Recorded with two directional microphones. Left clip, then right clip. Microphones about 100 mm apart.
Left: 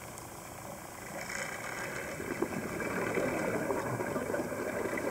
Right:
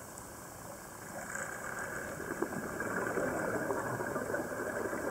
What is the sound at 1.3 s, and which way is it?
Vehicle, 30° left (ahead or behind).